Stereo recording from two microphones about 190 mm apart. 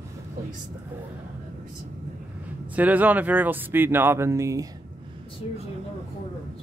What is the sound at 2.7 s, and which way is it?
Speech, 10° right (ahead or behind).